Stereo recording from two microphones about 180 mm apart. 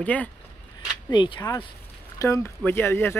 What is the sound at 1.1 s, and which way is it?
Speech, 25° left (ahead or behind).